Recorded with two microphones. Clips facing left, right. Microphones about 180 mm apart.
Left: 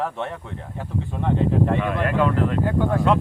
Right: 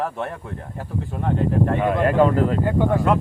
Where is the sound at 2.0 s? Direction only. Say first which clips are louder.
Right 6 dB; 35° right (ahead or behind).